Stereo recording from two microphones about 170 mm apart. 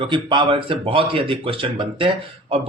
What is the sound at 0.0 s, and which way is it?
Speech, 30° right (ahead or behind).